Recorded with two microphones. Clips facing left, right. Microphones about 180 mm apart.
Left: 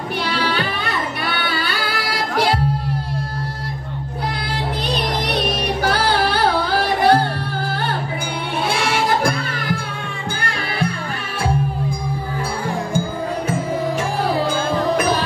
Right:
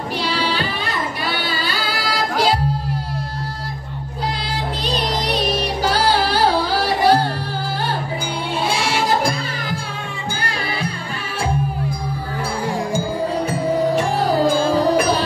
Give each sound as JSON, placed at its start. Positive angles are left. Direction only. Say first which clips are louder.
{"t": 0.2, "sound": "child singing", "louder": "left 1 dB", "side_deg": 60}
{"t": 1.2, "sound": "music", "louder": "even", "side_deg": 60}
{"t": 4.8, "sound": "music", "louder": "right 1 dB", "side_deg": 60}
{"t": 8.7, "sound": "music", "louder": "left 1 dB", "side_deg": 60}
{"t": 13.8, "sound": "music", "louder": "right 3 dB", "side_deg": -35}